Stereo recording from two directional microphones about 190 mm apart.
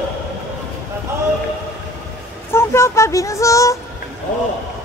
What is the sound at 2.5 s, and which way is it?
Speech, 15° left (ahead or behind).